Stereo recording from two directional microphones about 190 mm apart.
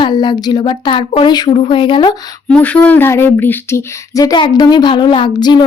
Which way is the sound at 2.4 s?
5° left (ahead or behind).